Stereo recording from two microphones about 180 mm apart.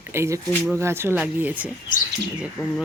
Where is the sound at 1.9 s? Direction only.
50° left (ahead or behind).